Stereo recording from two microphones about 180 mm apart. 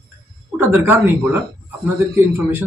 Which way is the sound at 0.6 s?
15° right (ahead or behind).